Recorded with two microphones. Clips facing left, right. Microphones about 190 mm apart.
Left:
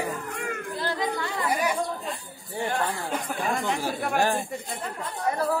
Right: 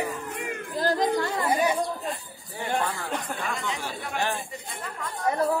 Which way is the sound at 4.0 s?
55° left (ahead or behind).